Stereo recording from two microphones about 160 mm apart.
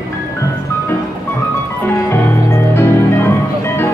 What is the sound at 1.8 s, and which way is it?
Music, 15° left (ahead or behind).